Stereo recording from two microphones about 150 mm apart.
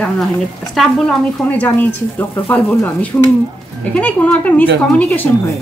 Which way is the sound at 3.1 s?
15° left (ahead or behind).